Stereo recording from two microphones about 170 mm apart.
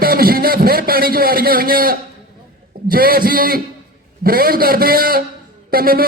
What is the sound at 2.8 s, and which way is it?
A man's voice, 60° right (ahead or behind).